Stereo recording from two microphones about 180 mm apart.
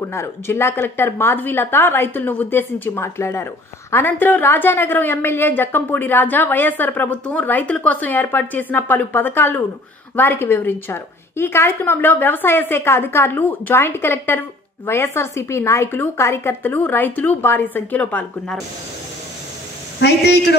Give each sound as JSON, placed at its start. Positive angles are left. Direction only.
{"t": 0.0, "sound": "a woman's voice", "side_deg": 15}
{"t": 20.0, "sound": "a man's voice", "side_deg": 65}